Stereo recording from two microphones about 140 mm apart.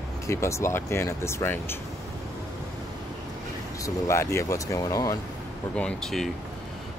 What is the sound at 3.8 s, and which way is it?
Speech, 20° left (ahead or behind).